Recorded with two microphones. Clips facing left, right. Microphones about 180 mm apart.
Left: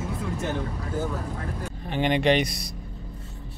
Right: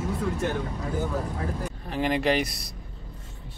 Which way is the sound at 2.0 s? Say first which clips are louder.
Left 2 dB; centre (ahead or behind).